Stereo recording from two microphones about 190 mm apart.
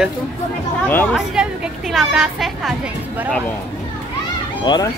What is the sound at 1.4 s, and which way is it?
A woman's voice, 5° right (ahead or behind).